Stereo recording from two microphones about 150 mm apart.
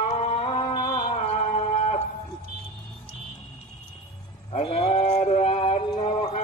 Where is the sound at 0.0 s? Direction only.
45° left (ahead or behind).